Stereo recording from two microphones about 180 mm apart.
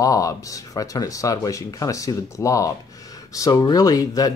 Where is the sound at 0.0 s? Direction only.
20° left (ahead or behind).